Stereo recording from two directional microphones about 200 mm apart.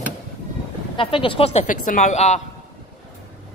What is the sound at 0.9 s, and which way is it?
A woman's voice, 25° left (ahead or behind).